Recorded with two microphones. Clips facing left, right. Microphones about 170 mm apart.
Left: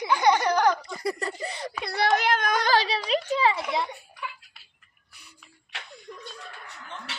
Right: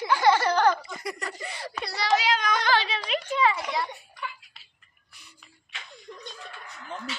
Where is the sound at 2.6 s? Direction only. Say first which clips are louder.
Left 2 dB; 40° left (ahead or behind).